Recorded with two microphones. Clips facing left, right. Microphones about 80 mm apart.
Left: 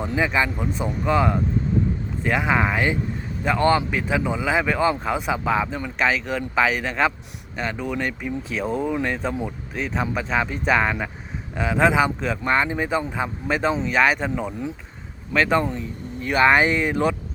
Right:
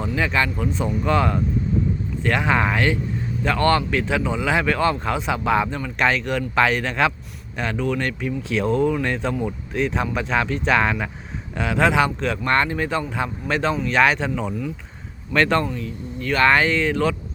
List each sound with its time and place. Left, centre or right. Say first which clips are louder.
0.2 s speech: even; centre